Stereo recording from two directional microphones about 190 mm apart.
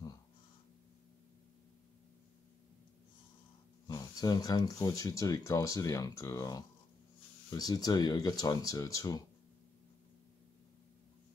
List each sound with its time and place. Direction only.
3.8 s speech: 20° left (ahead or behind)